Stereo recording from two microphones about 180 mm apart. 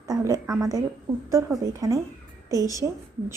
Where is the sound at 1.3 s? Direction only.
15° right (ahead or behind).